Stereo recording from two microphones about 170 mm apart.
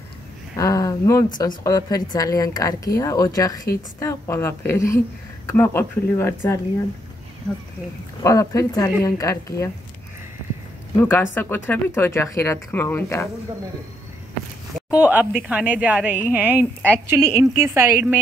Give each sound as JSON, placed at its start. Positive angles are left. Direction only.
{"t": 0.6, "sound": "a woman's voice", "side_deg": 20}
{"t": 8.2, "sound": "a woman's voice", "side_deg": 20}
{"t": 11.0, "sound": "speech", "side_deg": 10}
{"t": 14.8, "sound": "a woman's voice", "side_deg": -10}